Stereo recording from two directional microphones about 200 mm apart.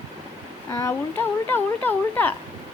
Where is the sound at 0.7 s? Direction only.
10° left (ahead or behind).